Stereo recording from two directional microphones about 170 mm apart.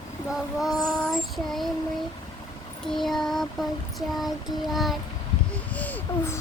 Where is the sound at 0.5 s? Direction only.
Centre (ahead or behind).